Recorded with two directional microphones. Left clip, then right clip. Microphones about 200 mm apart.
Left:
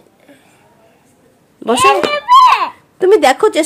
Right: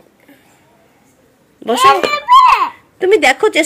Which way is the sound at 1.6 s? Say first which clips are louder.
Right 1 dB; 15° left (ahead or behind).